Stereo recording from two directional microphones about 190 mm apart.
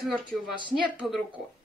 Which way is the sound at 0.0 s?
Centre (ahead or behind).